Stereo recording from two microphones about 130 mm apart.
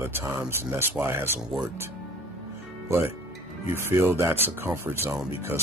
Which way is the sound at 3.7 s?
20° right (ahead or behind).